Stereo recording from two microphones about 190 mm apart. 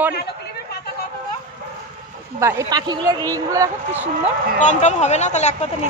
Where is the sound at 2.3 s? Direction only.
15° right (ahead or behind).